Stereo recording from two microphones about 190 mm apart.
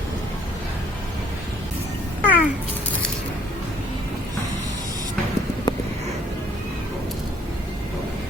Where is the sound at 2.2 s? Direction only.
10° right (ahead or behind).